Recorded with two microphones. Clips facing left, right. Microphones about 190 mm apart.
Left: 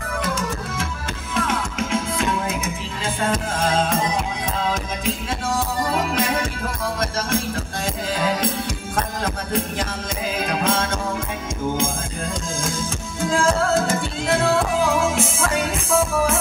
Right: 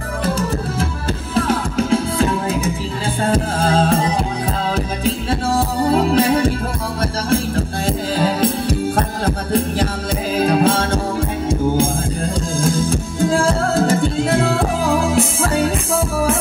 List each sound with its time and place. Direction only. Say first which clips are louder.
0.2 s music: right 7 dB; 35° right (ahead or behind)